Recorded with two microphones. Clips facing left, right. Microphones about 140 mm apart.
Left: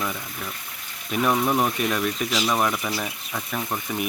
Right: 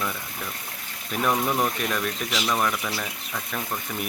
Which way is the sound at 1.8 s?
5° left (ahead or behind).